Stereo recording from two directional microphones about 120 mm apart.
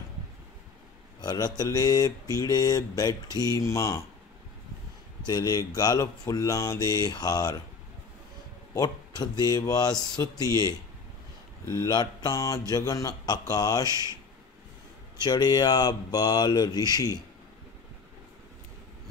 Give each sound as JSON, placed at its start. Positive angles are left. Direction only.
{"t": 1.2, "sound": "a man's voice", "side_deg": 35}
{"t": 5.2, "sound": "speech", "side_deg": 35}
{"t": 8.7, "sound": "speech", "side_deg": 35}
{"t": 15.1, "sound": "speech", "side_deg": 35}